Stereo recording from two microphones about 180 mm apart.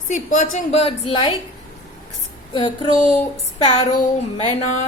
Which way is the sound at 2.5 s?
25° left (ahead or behind).